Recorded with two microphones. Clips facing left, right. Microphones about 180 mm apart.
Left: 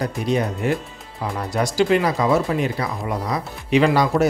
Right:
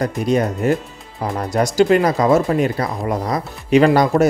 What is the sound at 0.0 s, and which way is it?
Speech, 45° right (ahead or behind).